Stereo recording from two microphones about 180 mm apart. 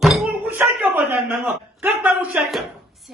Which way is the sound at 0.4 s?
10° right (ahead or behind).